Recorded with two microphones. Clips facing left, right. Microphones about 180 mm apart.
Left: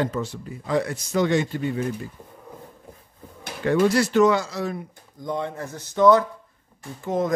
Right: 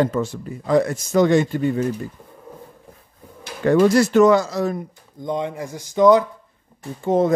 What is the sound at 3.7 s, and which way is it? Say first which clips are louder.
Speech: right 4 dB; 45° right (ahead or behind).